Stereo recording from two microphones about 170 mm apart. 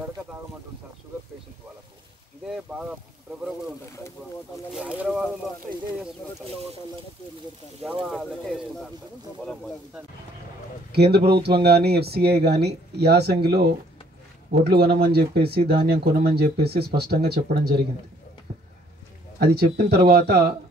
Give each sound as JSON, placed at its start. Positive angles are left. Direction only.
{"t": 2.5, "sound": "boat", "side_deg": -5}
{"t": 4.7, "sound": "speech", "side_deg": -5}
{"t": 7.8, "sound": "speech", "side_deg": 0}
{"t": 9.4, "sound": "a sound", "side_deg": 5}
{"t": 10.9, "sound": "a man's voice", "side_deg": -70}
{"t": 19.4, "sound": "speech", "side_deg": -65}